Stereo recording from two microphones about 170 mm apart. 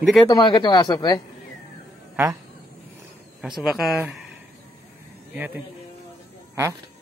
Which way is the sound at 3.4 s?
Centre (ahead or behind).